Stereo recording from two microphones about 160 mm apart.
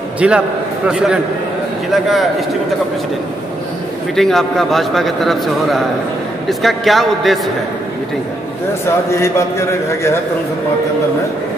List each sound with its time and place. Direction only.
0.2 s a man's voice: 5° right (ahead or behind)
4.1 s a man's voice: centre (ahead or behind)
8.8 s a man's voice: 15° left (ahead or behind)